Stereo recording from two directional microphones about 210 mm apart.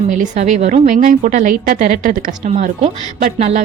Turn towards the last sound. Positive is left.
turn(degrees=-35)  # may be behind; listen again after turning